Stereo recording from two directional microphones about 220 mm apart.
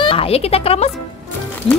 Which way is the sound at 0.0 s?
25° left (ahead or behind).